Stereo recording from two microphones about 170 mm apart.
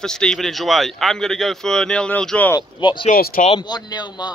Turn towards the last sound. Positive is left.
turn(degrees=25)  # may be behind; listen again after turning